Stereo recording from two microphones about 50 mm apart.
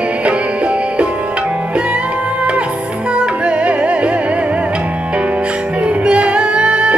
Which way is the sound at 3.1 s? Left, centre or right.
Right.